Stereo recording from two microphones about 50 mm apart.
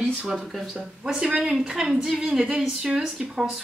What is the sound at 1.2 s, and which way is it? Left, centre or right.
A woman's voice, centre.